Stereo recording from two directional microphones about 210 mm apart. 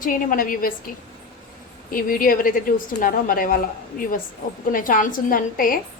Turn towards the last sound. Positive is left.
turn(degrees=40)  # may be behind; listen again after turning